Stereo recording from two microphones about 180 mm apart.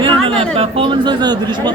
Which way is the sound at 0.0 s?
30° right (ahead or behind).